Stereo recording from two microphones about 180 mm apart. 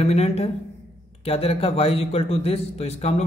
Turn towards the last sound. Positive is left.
turn(degrees=35)  # may be behind; listen again after turning